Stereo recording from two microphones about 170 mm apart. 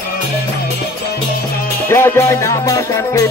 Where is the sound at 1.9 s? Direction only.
15° left (ahead or behind).